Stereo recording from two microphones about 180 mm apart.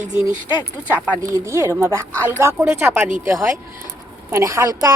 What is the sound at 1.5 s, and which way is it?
Speech, 15° right (ahead or behind).